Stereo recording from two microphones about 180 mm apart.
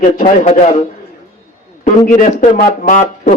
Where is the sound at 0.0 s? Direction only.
40° left (ahead or behind).